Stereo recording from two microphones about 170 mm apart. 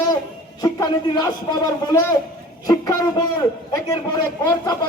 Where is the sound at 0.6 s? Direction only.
20° left (ahead or behind).